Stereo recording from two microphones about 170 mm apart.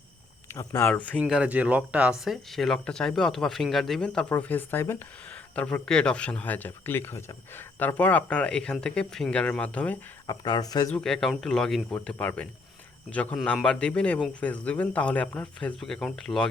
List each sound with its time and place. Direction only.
0.5 s a man's voice: 20° left (ahead or behind)
1.2 s a man's voice: 5° right (ahead or behind); by 10.0 s 10° left (ahead or behind)
10.2 s speech: 25° left (ahead or behind)
10.9 s a man's voice: 5° left (ahead or behind)